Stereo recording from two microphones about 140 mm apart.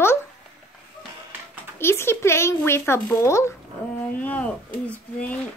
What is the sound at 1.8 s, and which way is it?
A woman's voice, 15° left (ahead or behind).